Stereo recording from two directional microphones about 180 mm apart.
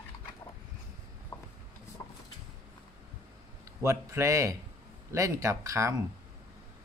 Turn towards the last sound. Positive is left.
turn(degrees=-15)  # may be behind; listen again after turning